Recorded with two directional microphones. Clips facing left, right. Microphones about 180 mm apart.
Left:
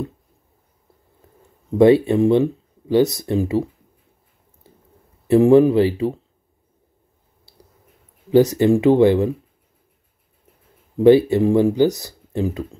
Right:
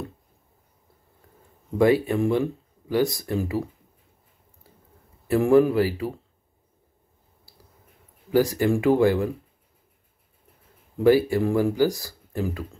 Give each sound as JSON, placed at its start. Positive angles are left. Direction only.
{"t": 1.8, "sound": "speech", "side_deg": 25}
{"t": 5.3, "sound": "speech", "side_deg": 20}
{"t": 8.3, "sound": "speech", "side_deg": 25}
{"t": 11.0, "sound": "speech", "side_deg": 25}